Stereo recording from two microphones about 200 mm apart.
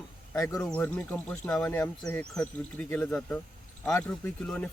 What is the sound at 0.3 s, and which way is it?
Speech, 15° left (ahead or behind).